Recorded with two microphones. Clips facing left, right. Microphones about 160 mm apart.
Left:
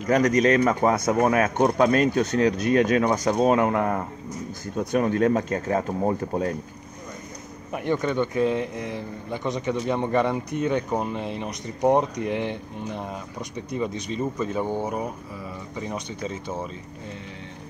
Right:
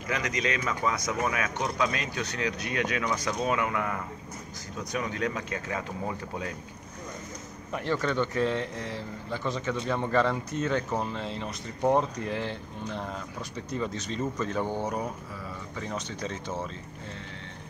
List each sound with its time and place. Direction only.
0.0 s speech: 45° left (ahead or behind)
7.7 s speech: 15° left (ahead or behind)